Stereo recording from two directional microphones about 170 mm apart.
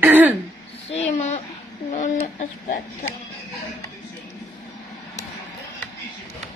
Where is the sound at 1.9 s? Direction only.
45° left (ahead or behind).